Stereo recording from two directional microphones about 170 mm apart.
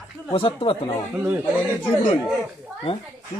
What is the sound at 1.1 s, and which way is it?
Speech, 10° right (ahead or behind).